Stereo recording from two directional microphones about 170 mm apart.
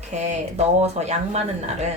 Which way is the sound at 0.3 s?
40° right (ahead or behind).